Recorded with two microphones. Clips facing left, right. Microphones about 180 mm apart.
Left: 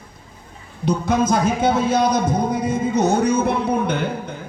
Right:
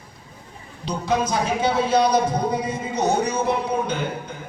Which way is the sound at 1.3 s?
50° left (ahead or behind).